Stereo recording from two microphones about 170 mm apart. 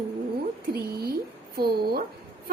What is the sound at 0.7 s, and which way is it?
A woman's voice, 65° right (ahead or behind).